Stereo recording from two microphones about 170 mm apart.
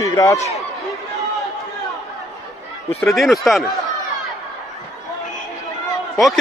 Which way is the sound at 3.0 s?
Centre (ahead or behind).